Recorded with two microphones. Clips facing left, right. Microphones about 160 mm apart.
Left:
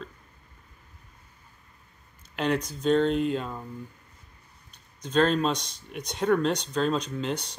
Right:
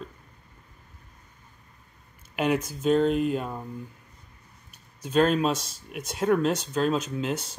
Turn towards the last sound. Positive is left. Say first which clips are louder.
# right 1 dB
turn(degrees=-5)  # may be behind; listen again after turning